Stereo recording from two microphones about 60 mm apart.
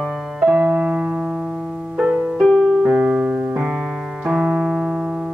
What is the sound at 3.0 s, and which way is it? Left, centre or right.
Piano, centre.